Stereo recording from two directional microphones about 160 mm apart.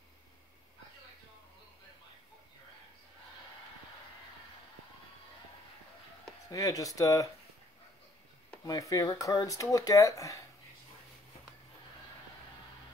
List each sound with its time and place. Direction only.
6.5 s speech: 20° left (ahead or behind)
8.6 s speech: 20° left (ahead or behind)